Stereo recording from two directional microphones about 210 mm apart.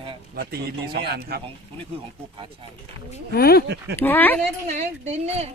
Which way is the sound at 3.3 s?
50° left (ahead or behind).